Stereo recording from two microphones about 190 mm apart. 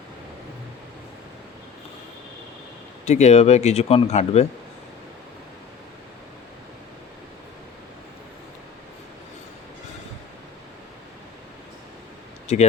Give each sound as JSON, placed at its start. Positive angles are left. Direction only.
{"t": 3.1, "sound": "speech", "side_deg": 35}
{"t": 12.5, "sound": "speech", "side_deg": 35}